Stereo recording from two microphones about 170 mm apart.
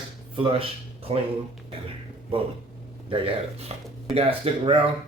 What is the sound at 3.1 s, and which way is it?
Speech, 30° right (ahead or behind).